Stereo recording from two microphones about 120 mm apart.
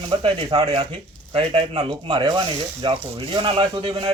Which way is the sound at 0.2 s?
45° right (ahead or behind).